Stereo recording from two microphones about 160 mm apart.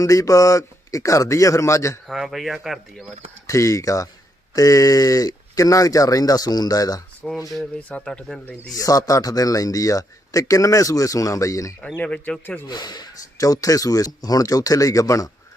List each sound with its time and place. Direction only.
0.0 s speech: 20° left (ahead or behind)
2.0 s speech: centre (ahead or behind)
3.4 s speech: 20° left (ahead or behind)
7.5 s speech: 5° left (ahead or behind)
8.7 s speech: 20° left (ahead or behind)
11.8 s speech: 5° left (ahead or behind)
12.6 s speech: 25° left (ahead or behind)